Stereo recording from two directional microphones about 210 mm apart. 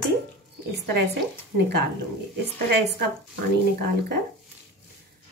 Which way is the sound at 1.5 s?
50° right (ahead or behind).